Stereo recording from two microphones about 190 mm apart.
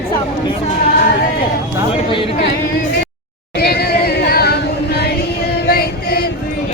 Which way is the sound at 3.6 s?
55° left (ahead or behind).